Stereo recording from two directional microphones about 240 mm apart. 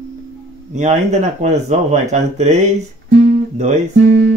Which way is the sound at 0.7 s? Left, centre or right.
Right.